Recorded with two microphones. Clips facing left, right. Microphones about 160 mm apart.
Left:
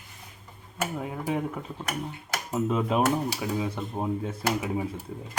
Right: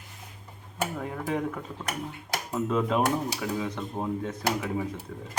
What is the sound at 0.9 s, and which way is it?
Speech, 10° left (ahead or behind).